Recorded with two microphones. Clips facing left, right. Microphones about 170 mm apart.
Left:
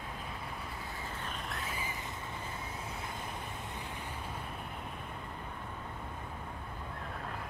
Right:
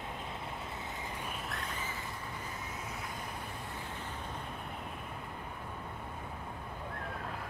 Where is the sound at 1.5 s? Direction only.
5° left (ahead or behind).